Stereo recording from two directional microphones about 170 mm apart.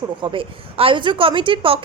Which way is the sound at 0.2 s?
30° right (ahead or behind).